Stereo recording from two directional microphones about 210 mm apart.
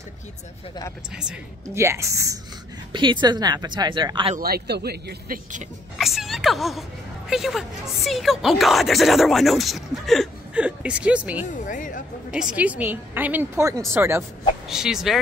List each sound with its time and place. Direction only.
1.1 s a woman's voice: 5° right (ahead or behind); by 4.4 s 25° right (ahead or behind)
4.4 s speech: 45° right (ahead or behind)
5.9 s a woman's voice: centre (ahead or behind)
11.5 s speech: 35° left (ahead or behind)
12.3 s a woman's voice: 5° right (ahead or behind)